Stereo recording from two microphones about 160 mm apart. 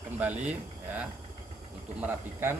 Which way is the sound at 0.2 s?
10° right (ahead or behind).